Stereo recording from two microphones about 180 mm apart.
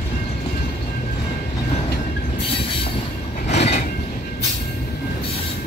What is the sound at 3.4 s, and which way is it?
Train, 35° left (ahead or behind).